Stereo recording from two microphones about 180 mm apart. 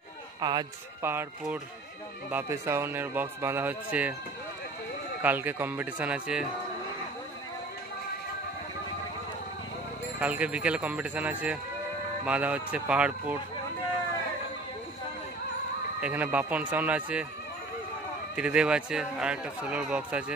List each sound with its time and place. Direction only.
0.4 s speech: 25° right (ahead or behind)
2.3 s speech: 15° right (ahead or behind)
5.2 s speech: 10° right (ahead or behind)
10.2 s speech: 5° right (ahead or behind)
16.0 s speech: 10° right (ahead or behind)
18.3 s a man's voice: 5° right (ahead or behind)